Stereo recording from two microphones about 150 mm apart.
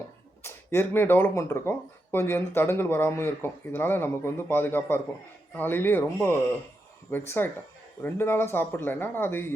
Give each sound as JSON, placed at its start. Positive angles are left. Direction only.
{"t": 0.4, "sound": "speech", "side_deg": 15}
{"t": 7.1, "sound": "speech", "side_deg": 15}